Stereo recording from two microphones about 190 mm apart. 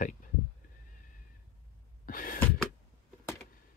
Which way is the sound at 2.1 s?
45° left (ahead or behind).